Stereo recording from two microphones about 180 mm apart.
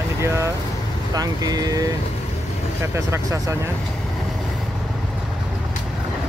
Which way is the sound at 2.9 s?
15° right (ahead or behind).